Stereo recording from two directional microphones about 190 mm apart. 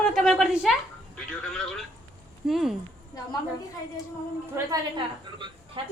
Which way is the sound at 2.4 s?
Centre (ahead or behind).